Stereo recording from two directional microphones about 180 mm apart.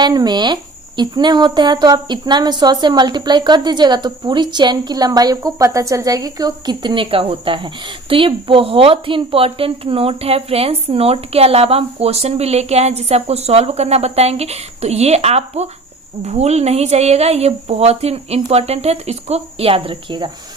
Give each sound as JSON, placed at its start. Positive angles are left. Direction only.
{"t": 0.0, "sound": "a woman's voice", "side_deg": -25}